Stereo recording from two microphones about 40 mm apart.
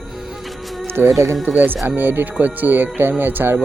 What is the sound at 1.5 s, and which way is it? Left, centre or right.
Speech, right.